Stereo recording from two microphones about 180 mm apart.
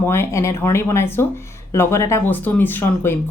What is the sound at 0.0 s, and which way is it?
Speech, 15° left (ahead or behind).